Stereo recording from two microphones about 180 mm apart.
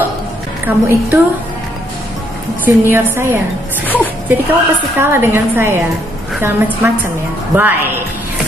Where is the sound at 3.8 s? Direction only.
10° left (ahead or behind).